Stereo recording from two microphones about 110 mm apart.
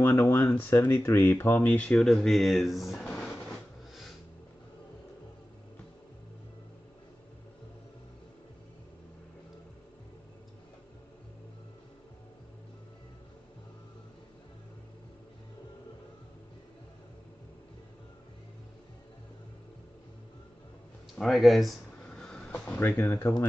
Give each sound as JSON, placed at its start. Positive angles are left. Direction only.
{"t": 0.0, "sound": "speech", "side_deg": 25}
{"t": 3.0, "sound": "drawer open or close", "side_deg": 5}
{"t": 21.2, "sound": "a sound", "side_deg": 0}
{"t": 22.8, "sound": "speech", "side_deg": 20}